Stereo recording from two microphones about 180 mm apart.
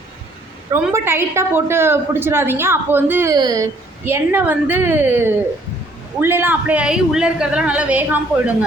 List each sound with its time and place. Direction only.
0.7 s a woman's voice: 15° right (ahead or behind)